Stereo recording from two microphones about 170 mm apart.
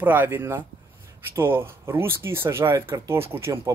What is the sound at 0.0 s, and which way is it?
Speech, 10° right (ahead or behind).